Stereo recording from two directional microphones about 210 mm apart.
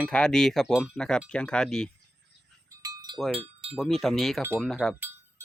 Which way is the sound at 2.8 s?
20° right (ahead or behind).